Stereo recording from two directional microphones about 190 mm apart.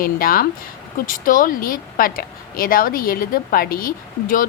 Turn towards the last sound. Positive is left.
turn(degrees=45)  # may be behind; listen again after turning